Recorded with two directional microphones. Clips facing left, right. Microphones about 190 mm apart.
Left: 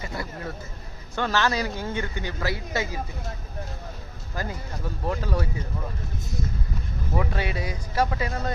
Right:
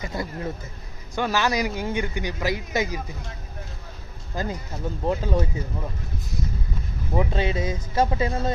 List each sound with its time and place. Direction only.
0.0 s speech: 20° right (ahead or behind)
4.4 s speech: 20° right (ahead or behind)
7.2 s speech: 25° right (ahead or behind)